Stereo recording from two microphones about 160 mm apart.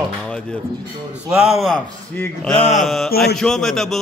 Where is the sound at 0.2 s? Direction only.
5° left (ahead or behind).